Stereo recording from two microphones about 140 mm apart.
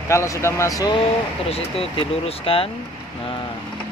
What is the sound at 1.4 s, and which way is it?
Speech, 45° left (ahead or behind).